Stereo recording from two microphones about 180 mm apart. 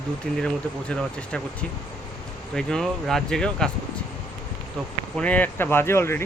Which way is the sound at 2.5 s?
5° left (ahead or behind).